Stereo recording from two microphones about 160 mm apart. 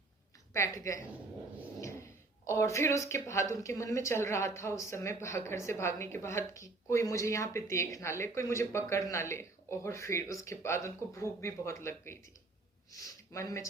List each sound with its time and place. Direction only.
0.5 s a woman's voice: 20° left (ahead or behind)
1.8 s a sound: 15° left (ahead or behind)
2.5 s speech: 15° left (ahead or behind)